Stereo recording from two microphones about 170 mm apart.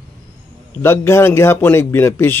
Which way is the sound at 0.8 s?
15° left (ahead or behind).